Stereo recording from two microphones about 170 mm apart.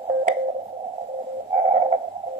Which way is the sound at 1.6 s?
40° right (ahead or behind).